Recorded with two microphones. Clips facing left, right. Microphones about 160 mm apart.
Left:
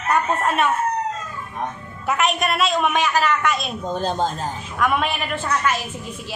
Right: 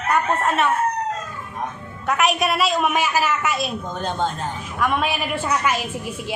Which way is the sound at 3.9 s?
35° left (ahead or behind).